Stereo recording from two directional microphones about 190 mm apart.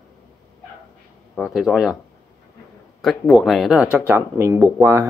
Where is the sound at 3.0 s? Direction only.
Centre (ahead or behind).